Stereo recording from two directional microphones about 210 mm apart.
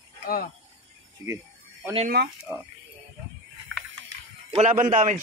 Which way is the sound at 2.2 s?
50° right (ahead or behind).